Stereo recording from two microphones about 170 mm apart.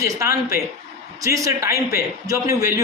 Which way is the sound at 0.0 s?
20° right (ahead or behind).